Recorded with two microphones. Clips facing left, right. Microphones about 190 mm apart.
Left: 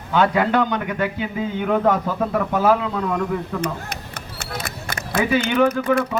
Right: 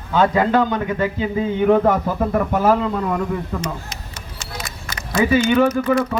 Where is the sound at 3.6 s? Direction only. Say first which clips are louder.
Left 2 dB; 55° left (ahead or behind).